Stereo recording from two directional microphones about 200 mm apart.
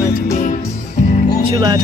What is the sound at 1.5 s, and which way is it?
Speech, 20° right (ahead or behind).